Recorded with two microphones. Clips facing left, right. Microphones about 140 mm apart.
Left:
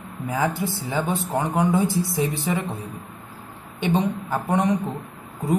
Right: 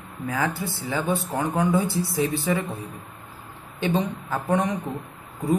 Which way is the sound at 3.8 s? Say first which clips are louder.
Left 2 dB; 20° left (ahead or behind).